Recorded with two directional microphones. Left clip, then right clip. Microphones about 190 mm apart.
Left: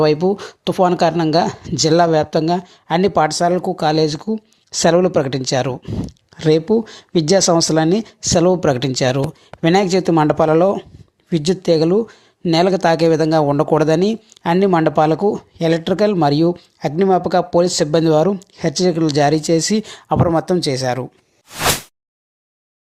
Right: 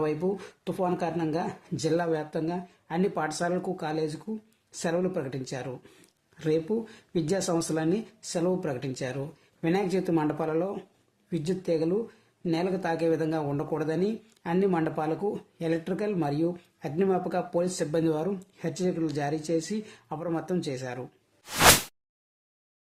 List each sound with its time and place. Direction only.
0.0 s speech: 40° left (ahead or behind)